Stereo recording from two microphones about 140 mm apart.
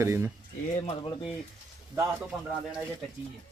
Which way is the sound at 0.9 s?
40° left (ahead or behind).